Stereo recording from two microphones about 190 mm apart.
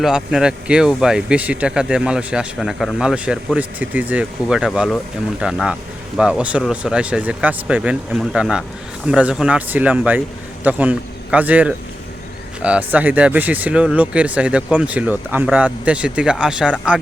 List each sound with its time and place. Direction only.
0.0 s speech: 5° right (ahead or behind)